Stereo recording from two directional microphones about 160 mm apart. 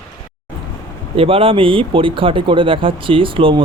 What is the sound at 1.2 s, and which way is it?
Speech, 35° right (ahead or behind).